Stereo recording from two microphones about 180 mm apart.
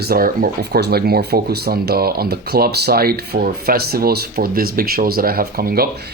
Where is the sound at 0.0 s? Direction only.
55° right (ahead or behind).